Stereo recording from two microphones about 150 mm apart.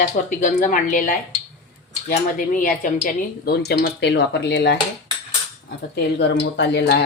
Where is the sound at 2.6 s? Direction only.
60° left (ahead or behind); by 3.7 s 90° left.